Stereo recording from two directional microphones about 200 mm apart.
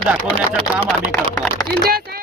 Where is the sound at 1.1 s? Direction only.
20° left (ahead or behind).